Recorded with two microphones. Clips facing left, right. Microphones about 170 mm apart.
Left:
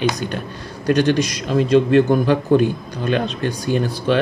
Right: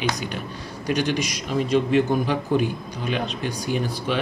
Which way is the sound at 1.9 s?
65° left (ahead or behind).